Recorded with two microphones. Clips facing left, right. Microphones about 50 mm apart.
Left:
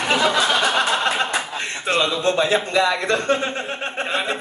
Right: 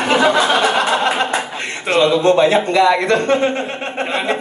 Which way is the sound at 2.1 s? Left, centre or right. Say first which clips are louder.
Right 10 dB; right.